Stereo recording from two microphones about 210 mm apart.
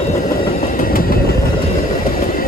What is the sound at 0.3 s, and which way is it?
Train, 45° left (ahead or behind).